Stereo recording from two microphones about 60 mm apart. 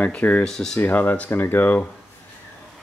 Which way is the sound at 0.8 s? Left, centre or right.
Left.